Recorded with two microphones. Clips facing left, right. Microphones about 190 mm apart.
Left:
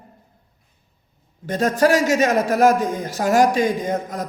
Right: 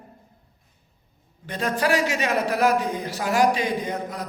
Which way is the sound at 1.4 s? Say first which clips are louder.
Left 7 dB; 45° left (ahead or behind).